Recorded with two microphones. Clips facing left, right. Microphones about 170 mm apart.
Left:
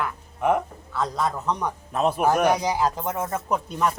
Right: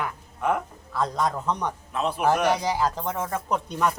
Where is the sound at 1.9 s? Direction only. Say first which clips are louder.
Left 2 dB; 45° left (ahead or behind).